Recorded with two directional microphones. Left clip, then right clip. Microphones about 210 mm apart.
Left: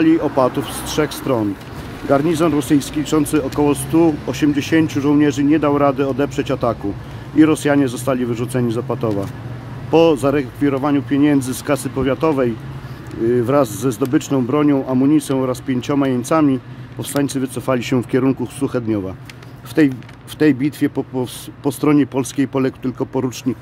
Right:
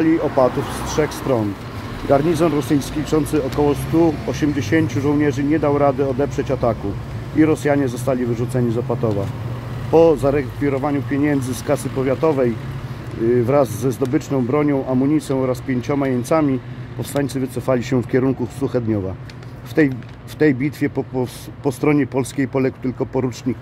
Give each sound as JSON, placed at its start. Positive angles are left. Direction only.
{"t": 0.0, "sound": "speech", "side_deg": 15}
{"t": 13.5, "sound": "speech", "side_deg": 15}